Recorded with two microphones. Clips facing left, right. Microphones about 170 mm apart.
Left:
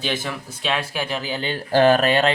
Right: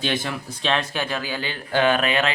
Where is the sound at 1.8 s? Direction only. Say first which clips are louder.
Left 4 dB; 40° left (ahead or behind).